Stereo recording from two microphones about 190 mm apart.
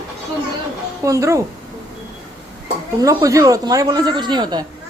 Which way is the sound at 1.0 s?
15° right (ahead or behind).